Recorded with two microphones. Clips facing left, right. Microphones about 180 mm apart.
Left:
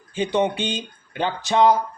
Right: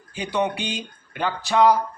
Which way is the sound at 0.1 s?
25° left (ahead or behind).